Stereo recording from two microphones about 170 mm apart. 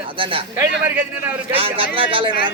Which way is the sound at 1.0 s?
10° right (ahead or behind).